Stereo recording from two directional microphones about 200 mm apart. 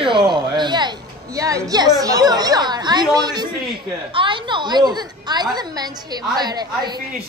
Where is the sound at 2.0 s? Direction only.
15° right (ahead or behind).